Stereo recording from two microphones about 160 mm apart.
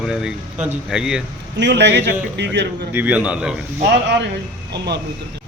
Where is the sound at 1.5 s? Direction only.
90° right.